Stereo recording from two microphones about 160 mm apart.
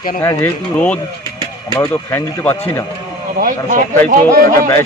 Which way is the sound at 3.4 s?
60° right (ahead or behind).